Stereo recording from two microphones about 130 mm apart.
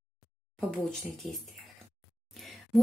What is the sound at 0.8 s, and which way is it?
Speech, 5° left (ahead or behind).